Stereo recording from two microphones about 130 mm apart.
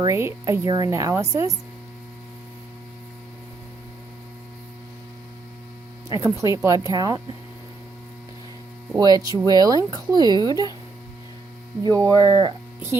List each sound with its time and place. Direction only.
0.0 s speech: 20° right (ahead or behind)
6.1 s speech: 20° right (ahead or behind)
9.0 s speech: 30° right (ahead or behind)
11.8 s speech: 30° right (ahead or behind)